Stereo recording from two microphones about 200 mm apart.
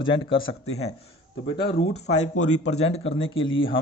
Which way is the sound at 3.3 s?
75° left (ahead or behind).